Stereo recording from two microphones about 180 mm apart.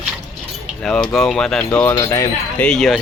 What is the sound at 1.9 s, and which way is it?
Wind chime, 15° left (ahead or behind).